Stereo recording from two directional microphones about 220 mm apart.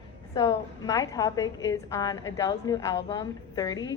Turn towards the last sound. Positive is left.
turn(degrees=15)  # may be behind; listen again after turning